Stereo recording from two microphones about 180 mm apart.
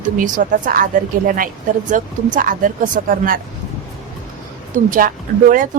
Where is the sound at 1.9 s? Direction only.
50° right (ahead or behind).